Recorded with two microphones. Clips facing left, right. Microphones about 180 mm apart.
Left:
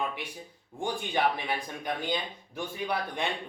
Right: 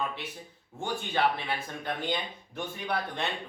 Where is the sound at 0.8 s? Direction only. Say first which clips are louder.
Even; 15° left (ahead or behind).